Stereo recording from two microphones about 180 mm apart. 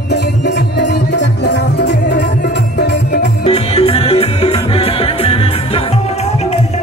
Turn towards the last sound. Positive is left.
turn(degrees=35)  # may be behind; listen again after turning